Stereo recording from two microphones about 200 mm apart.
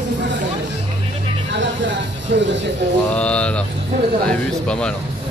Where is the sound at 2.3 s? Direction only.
60° right (ahead or behind).